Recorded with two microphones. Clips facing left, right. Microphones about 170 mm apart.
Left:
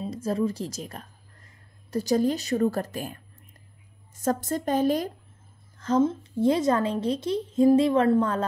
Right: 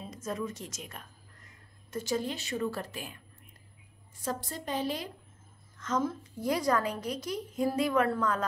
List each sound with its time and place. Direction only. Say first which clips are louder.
0.0 s a woman's voice: left 9 dB; 30° left (ahead or behind)
5.8 s a woman's voice: left 9 dB; 30° left (ahead or behind)